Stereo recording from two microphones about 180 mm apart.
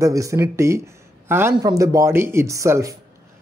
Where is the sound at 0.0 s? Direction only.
15° right (ahead or behind).